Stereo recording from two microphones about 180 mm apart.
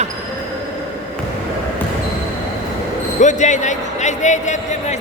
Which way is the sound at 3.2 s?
40° left (ahead or behind).